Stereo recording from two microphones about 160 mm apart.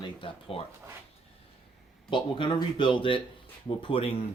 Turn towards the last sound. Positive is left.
turn(degrees=35)  # may be behind; listen again after turning